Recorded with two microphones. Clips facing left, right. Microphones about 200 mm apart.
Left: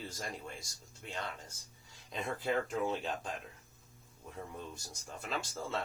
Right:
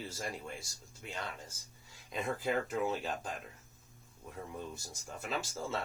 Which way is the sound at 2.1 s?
5° right (ahead or behind).